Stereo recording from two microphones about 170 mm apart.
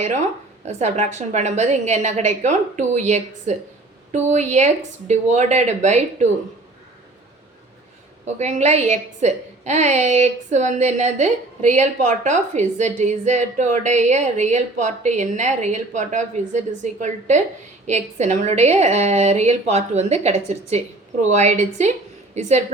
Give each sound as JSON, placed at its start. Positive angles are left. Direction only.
{"t": 0.6, "sound": "a woman's voice", "side_deg": -40}
{"t": 8.4, "sound": "a woman's voice", "side_deg": -40}